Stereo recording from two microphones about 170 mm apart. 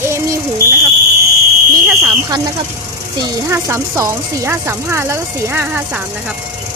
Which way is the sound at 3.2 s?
20° right (ahead or behind).